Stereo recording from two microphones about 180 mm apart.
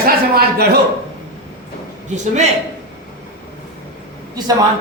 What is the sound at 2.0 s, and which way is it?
Speech, 40° right (ahead or behind).